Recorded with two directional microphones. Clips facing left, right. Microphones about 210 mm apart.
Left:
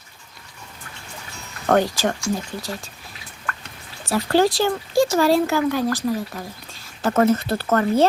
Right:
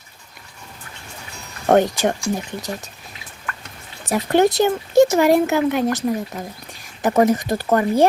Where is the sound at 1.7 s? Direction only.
20° right (ahead or behind).